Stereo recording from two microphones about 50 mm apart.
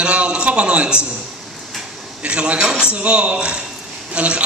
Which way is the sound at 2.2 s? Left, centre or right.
Right.